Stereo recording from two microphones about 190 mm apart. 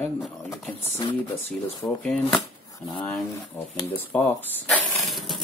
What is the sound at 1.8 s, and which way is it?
Speech, 20° left (ahead or behind).